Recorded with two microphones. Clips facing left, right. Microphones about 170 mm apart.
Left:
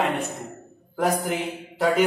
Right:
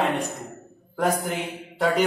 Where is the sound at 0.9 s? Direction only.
5° left (ahead or behind).